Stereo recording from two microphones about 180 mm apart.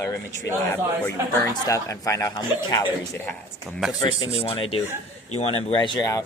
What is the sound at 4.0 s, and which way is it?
Speech, 30° left (ahead or behind).